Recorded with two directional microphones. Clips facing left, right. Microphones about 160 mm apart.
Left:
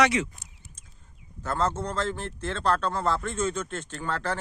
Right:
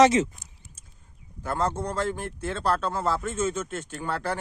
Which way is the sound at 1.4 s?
10° right (ahead or behind).